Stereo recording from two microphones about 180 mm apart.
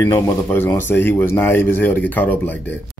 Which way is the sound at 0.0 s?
15° left (ahead or behind).